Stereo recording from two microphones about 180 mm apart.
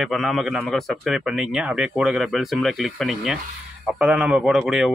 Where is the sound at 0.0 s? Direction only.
Centre (ahead or behind).